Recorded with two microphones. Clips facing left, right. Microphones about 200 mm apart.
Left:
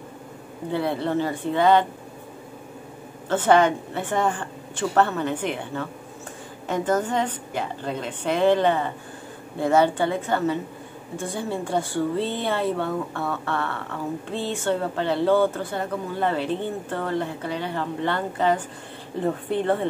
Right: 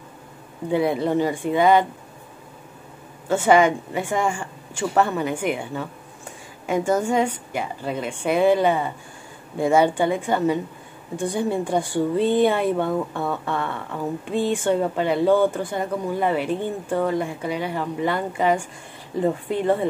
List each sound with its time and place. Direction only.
0.7 s speech: 15° right (ahead or behind)
3.3 s speech: 10° right (ahead or behind)